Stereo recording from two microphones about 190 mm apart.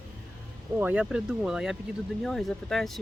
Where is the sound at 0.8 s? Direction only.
5° right (ahead or behind).